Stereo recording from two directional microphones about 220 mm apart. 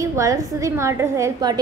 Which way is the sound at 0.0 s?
15° right (ahead or behind).